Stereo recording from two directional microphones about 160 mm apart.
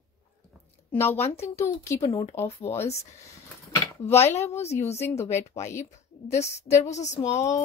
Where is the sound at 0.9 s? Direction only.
15° left (ahead or behind).